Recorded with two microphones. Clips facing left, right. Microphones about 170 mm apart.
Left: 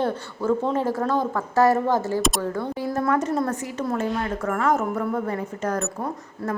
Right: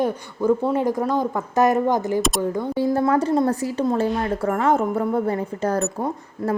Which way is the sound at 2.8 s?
25° right (ahead or behind).